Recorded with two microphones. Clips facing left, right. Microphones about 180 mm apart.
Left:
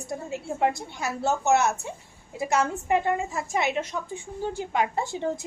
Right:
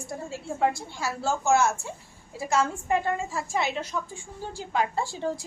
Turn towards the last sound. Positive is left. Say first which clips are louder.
# left 1 dB
turn(degrees=20)  # may be behind; listen again after turning